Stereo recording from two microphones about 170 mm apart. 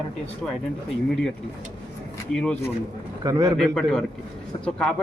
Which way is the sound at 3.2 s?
20° right (ahead or behind).